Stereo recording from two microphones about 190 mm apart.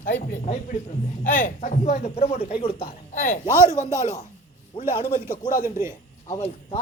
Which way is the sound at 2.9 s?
40° left (ahead or behind).